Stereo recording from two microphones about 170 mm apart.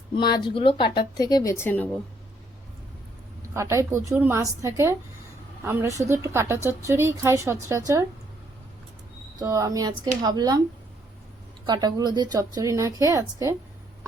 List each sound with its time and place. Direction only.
0.2 s speech: 25° left (ahead or behind)
3.5 s a woman's voice: 15° right (ahead or behind)
9.4 s speech: 20° right (ahead or behind)
11.6 s speech: 25° right (ahead or behind)